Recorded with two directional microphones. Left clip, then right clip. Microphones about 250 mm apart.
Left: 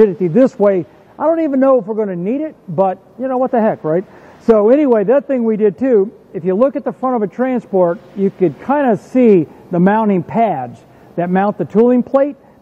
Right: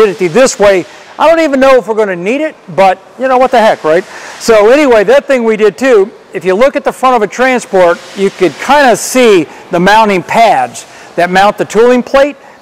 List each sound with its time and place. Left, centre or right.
0.1 s a man's voice: centre
2.0 s speech: centre
7.7 s speech: right
8.2 s speech: centre